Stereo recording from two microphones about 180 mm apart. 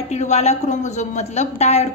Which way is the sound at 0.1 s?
40° left (ahead or behind).